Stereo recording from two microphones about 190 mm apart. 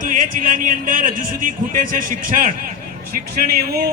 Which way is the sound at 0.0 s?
45° right (ahead or behind).